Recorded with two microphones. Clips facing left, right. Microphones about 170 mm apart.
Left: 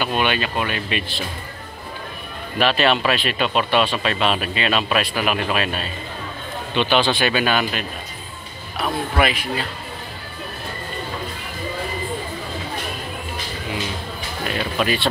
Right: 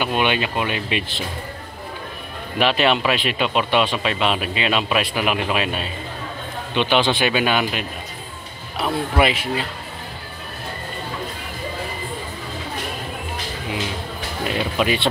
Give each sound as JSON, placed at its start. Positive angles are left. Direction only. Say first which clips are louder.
{"t": 0.0, "sound": "speech", "louder": "right 1 dB", "side_deg": -20}
{"t": 2.6, "sound": "speech", "louder": "even", "side_deg": -15}
{"t": 14.4, "sound": "speech", "louder": "right 1 dB", "side_deg": -20}